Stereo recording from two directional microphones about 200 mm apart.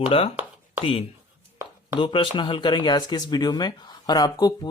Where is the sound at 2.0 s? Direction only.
25° left (ahead or behind).